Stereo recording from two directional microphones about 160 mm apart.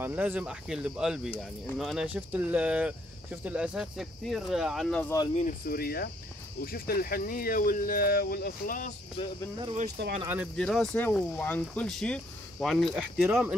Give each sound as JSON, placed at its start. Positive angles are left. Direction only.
{"t": 0.0, "sound": "speech", "side_deg": -10}
{"t": 5.3, "sound": "speech", "side_deg": 45}
{"t": 5.7, "sound": "cricket", "side_deg": 70}
{"t": 6.6, "sound": "speech", "side_deg": 65}
{"t": 9.2, "sound": "speech", "side_deg": 30}
{"t": 10.2, "sound": "speech", "side_deg": -10}
{"t": 10.5, "sound": "speech", "side_deg": 5}